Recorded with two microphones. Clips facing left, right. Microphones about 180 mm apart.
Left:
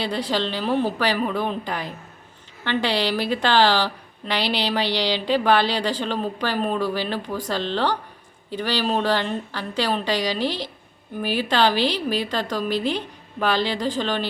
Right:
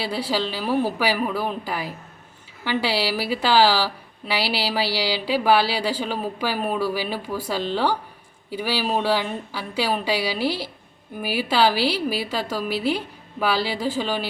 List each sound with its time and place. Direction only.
0.0 s a woman's voice: 5° right (ahead or behind)